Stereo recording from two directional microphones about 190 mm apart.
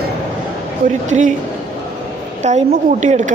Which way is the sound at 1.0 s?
40° right (ahead or behind).